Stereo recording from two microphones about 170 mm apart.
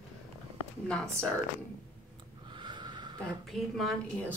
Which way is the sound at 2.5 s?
30° right (ahead or behind).